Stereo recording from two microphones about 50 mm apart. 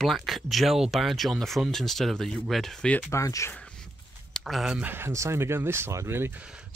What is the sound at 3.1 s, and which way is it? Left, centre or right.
Speech, left.